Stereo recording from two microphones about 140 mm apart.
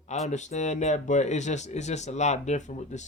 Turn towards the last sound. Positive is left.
turn(degrees=55)  # may be behind; listen again after turning